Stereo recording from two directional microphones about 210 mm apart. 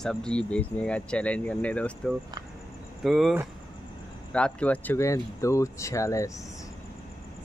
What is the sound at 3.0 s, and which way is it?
Speech, centre (ahead or behind).